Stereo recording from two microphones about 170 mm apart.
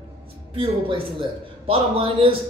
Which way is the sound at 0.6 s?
30° right (ahead or behind).